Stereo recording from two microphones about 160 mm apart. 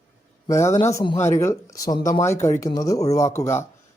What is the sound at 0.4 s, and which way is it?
Speech, 20° left (ahead or behind).